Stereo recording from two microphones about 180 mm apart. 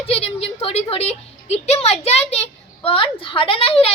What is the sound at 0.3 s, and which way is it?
A woman's voice, 35° left (ahead or behind).